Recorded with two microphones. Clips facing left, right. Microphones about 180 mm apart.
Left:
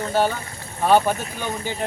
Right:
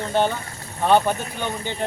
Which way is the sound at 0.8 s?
10° left (ahead or behind).